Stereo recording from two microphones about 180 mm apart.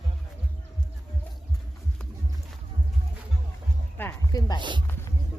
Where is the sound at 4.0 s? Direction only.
15° left (ahead or behind).